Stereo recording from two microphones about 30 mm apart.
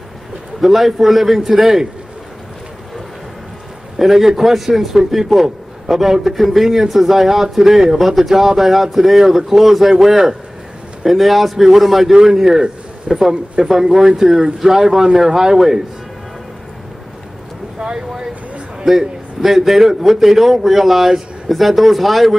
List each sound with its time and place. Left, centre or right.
0.6 s a man's voice: centre
4.0 s a man's voice: centre
11.1 s a man's voice: centre
12.1 s speech: centre
12.5 s a sound: right
13.8 s speech: right
17.7 s a sound: right
18.9 s a man's voice: centre